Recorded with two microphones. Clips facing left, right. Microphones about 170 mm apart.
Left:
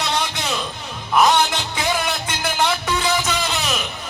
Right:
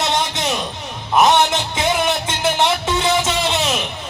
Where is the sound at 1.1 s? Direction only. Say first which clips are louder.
Right 2 dB; 25° right (ahead or behind).